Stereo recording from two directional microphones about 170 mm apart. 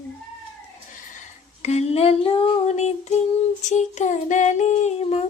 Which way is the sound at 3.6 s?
45° left (ahead or behind).